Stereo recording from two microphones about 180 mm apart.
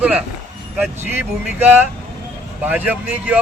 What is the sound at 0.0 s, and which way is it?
Speech, 5° right (ahead or behind).